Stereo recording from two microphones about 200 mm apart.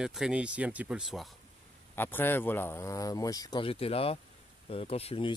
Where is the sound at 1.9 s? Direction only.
10° left (ahead or behind).